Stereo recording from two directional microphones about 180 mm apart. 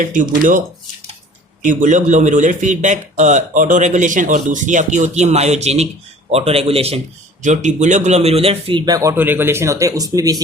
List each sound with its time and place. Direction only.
0.0 s speech: 45° right (ahead or behind)
1.6 s a man's voice: 45° right (ahead or behind); by 10.4 s 20° right (ahead or behind)